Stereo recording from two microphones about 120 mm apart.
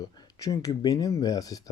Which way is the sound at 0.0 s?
30° left (ahead or behind).